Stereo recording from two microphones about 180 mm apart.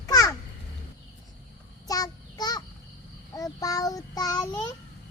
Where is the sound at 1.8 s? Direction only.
20° left (ahead or behind).